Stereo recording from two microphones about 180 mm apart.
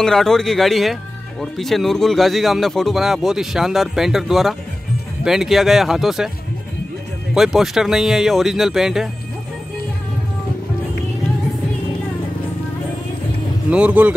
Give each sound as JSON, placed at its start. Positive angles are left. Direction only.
{"t": 0.0, "sound": "speech", "side_deg": 5}
{"t": 7.3, "sound": "speech", "side_deg": 0}
{"t": 13.7, "sound": "speech", "side_deg": -5}